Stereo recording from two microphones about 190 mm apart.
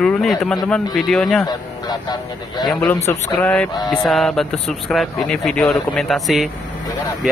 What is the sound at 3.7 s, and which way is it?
Speech, 20° left (ahead or behind).